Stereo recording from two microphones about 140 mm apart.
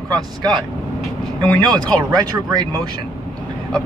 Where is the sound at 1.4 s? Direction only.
10° left (ahead or behind).